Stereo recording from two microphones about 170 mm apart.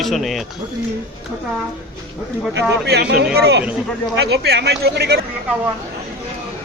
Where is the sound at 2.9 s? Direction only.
70° right (ahead or behind).